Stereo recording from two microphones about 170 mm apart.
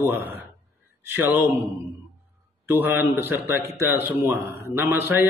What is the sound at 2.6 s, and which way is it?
A man's voice, 10° right (ahead or behind).